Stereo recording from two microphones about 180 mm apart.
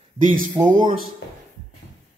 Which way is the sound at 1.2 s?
85° left.